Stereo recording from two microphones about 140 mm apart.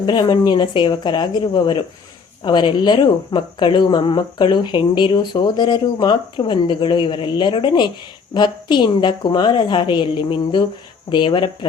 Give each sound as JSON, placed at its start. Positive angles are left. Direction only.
{"t": 0.0, "sound": "speech", "side_deg": 35}